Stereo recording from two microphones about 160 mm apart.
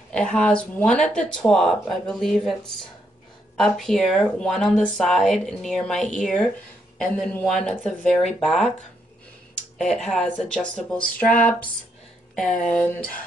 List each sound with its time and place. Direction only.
0.1 s speech: 5° left (ahead or behind)
3.5 s speech: 5° left (ahead or behind)
9.9 s speech: 5° left (ahead or behind)